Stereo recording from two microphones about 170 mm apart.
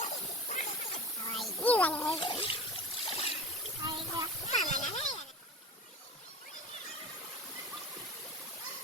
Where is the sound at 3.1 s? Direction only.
35° left (ahead or behind).